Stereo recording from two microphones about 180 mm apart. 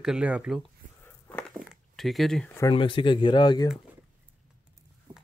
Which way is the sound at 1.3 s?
10° left (ahead or behind).